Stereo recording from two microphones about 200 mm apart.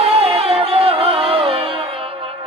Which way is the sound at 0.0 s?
30° right (ahead or behind).